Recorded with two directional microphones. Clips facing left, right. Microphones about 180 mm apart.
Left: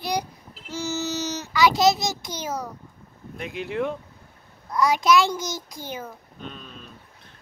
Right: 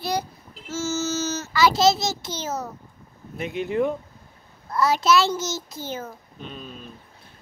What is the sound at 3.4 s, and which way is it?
Speech, centre (ahead or behind).